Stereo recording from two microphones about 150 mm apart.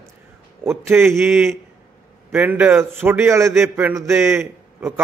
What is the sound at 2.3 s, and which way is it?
A man's voice, 10° right (ahead or behind).